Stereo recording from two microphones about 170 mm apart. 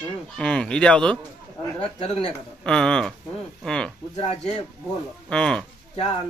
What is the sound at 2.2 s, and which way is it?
Speech, 5° left (ahead or behind).